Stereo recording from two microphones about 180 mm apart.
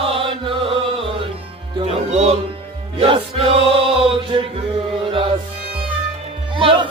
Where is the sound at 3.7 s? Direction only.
30° right (ahead or behind).